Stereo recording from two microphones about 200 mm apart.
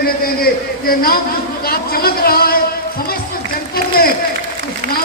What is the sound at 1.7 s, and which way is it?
Speech, 50° left (ahead or behind).